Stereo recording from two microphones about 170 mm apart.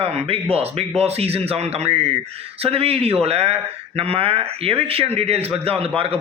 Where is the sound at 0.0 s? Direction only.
35° right (ahead or behind).